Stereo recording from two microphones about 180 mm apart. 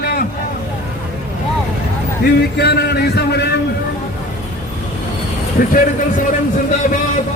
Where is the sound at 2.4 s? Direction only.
65° left (ahead or behind).